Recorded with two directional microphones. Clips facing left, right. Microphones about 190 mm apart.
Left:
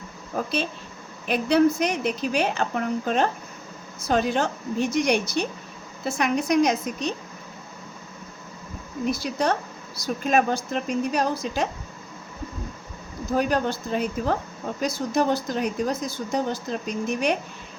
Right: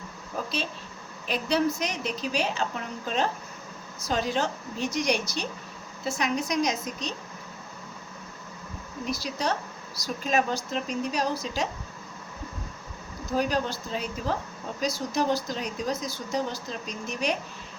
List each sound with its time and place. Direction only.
0.4 s a woman's voice: 55° left (ahead or behind)
9.0 s a woman's voice: 55° left (ahead or behind)
13.3 s a woman's voice: 55° left (ahead or behind)